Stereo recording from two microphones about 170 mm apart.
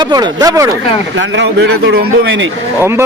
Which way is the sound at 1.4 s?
90° right.